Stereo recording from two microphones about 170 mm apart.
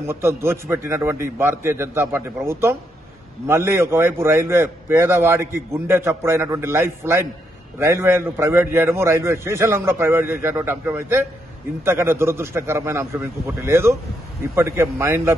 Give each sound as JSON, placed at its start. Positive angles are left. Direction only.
{"t": 0.0, "sound": "a man's voice", "side_deg": -15}